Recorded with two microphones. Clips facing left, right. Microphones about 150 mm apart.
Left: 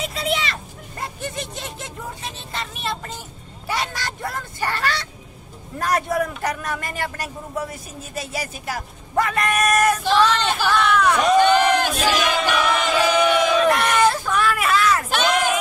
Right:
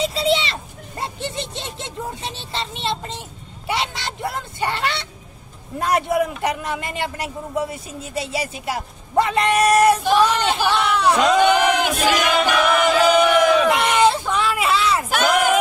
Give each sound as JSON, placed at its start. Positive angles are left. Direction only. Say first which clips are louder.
{"t": 0.0, "sound": "a sound", "louder": "right 5 dB", "side_deg": -30}
{"t": 5.8, "sound": "a man's voice", "louder": "right 2 dB", "side_deg": -20}
{"t": 10.0, "sound": "a man's voice", "louder": "right 1 dB", "side_deg": -15}
{"t": 11.3, "sound": "battle cry", "louder": "even", "side_deg": -15}
{"t": 13.7, "sound": "a sound", "louder": "right 1 dB", "side_deg": -20}
{"t": 15.0, "sound": "crowd", "louder": "right 2 dB", "side_deg": -5}